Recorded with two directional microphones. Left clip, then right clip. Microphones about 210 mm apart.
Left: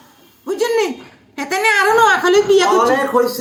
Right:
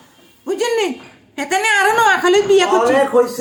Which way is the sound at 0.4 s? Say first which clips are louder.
Left 1 dB; 15° right (ahead or behind).